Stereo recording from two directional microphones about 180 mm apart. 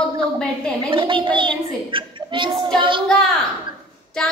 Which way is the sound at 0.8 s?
30° right (ahead or behind).